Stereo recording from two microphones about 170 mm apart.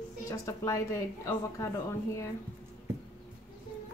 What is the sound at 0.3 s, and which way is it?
A woman's voice, 20° left (ahead or behind).